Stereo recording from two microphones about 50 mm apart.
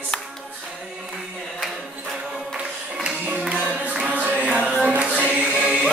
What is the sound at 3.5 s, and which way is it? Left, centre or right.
Music, right.